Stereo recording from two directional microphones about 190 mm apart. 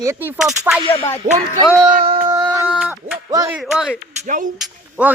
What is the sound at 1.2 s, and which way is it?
Speech, 40° right (ahead or behind).